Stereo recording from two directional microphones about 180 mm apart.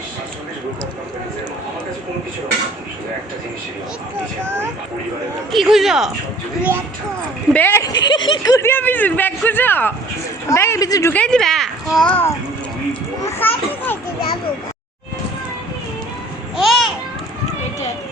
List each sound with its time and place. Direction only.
5.5 s speech: centre (ahead or behind)
7.5 s speech: 10° left (ahead or behind)
11.1 s speech: 5° left (ahead or behind)
13.4 s speech: 10° left (ahead or behind)
16.6 s a sound: centre (ahead or behind)